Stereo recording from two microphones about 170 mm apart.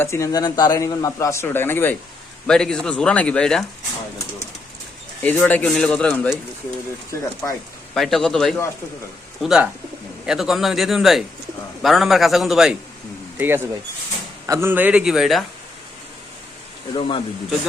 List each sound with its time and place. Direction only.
0.0 s a man's voice: 15° left (ahead or behind)
5.2 s speech: 10° left (ahead or behind)
7.9 s a man's voice: centre (ahead or behind)
13.4 s a man's voice: 15° right (ahead or behind)
16.9 s speech: 30° left (ahead or behind)